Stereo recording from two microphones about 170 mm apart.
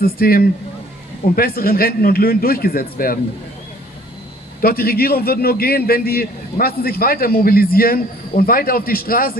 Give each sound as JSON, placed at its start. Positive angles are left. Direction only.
{"t": 0.0, "sound": "a man's voice", "side_deg": 60}
{"t": 4.6, "sound": "a man's voice", "side_deg": 60}